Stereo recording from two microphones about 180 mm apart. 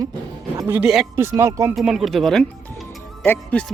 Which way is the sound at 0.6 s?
10° right (ahead or behind).